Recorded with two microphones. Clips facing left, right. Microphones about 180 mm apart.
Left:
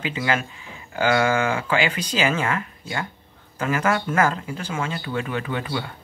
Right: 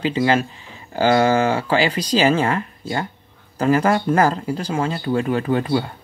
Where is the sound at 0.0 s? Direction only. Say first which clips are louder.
Right 6 dB; 35° right (ahead or behind).